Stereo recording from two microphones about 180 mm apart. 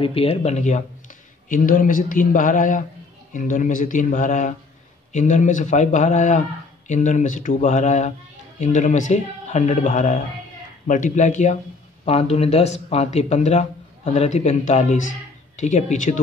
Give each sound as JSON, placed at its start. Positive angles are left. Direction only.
{"t": 0.0, "sound": "speech", "side_deg": 35}